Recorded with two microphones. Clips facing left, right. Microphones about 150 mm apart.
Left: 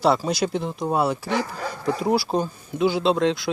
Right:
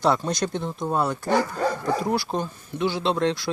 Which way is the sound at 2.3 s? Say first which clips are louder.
Left 4 dB; 20° left (ahead or behind).